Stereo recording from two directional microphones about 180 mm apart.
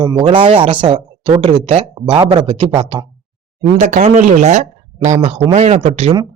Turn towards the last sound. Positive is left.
turn(degrees=-35)  # may be behind; listen again after turning